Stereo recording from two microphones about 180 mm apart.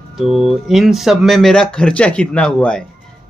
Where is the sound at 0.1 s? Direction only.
Centre (ahead or behind).